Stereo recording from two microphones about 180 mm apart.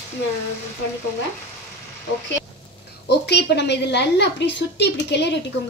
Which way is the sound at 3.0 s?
70° left (ahead or behind).